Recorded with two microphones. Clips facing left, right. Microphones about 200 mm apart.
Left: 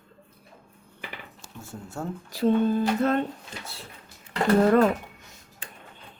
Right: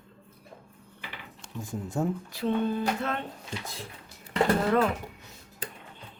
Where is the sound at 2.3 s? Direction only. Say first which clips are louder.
Left 9 dB; 40° left (ahead or behind).